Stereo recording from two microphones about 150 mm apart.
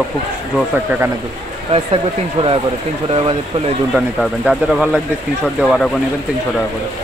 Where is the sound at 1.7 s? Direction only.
40° right (ahead or behind).